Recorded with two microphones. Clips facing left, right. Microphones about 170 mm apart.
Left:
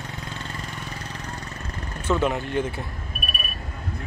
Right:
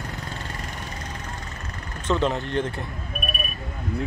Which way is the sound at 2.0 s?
5° left (ahead or behind).